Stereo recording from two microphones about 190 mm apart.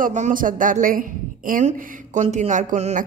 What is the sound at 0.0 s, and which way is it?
A woman's voice, 45° right (ahead or behind).